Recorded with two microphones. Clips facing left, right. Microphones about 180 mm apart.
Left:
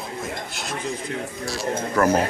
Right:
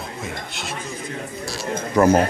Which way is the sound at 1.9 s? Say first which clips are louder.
Right 4 dB; 20° right (ahead or behind).